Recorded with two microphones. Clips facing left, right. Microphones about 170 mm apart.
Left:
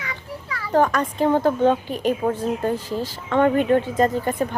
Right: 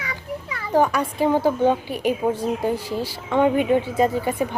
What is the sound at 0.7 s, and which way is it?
A woman's voice, 10° right (ahead or behind).